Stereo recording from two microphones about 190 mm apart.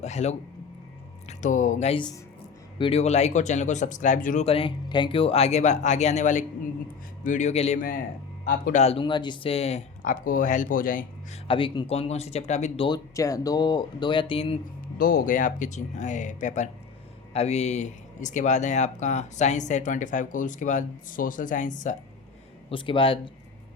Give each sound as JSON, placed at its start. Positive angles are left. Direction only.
{"t": 0.0, "sound": "speech", "side_deg": 35}
{"t": 8.8, "sound": "speech", "side_deg": 30}
{"t": 11.4, "sound": "speech", "side_deg": 25}
{"t": 13.1, "sound": "speech", "side_deg": 20}
{"t": 14.9, "sound": "speech", "side_deg": 50}
{"t": 22.7, "sound": "speech", "side_deg": 25}